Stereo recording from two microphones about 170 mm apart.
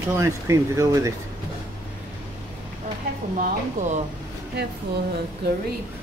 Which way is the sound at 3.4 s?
45° right (ahead or behind).